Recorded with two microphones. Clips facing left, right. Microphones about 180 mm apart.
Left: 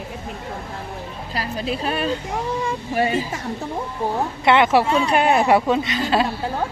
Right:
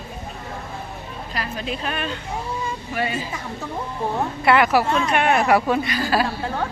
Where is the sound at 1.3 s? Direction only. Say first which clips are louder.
Left 3 dB; 35° left (ahead or behind).